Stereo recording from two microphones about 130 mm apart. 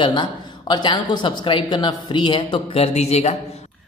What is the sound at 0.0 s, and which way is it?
A woman's voice, 35° left (ahead or behind).